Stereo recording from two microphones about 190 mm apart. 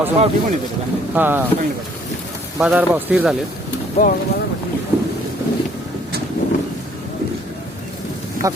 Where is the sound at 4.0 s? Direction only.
35° left (ahead or behind).